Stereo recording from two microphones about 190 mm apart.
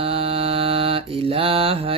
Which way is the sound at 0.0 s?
30° right (ahead or behind).